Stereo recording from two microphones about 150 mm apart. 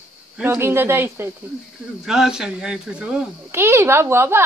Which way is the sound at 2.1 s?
5° right (ahead or behind).